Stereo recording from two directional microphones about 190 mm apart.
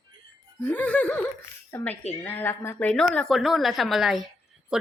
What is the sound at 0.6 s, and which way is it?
A woman's voice, 10° left (ahead or behind).